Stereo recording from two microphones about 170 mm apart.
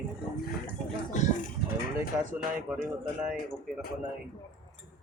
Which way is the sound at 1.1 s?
45° left (ahead or behind).